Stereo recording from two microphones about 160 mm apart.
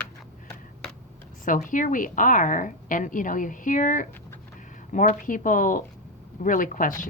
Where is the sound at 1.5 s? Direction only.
55° left (ahead or behind).